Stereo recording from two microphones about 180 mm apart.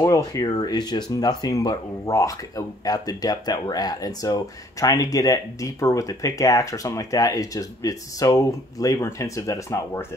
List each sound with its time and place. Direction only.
0.0 s speech: 20° left (ahead or behind)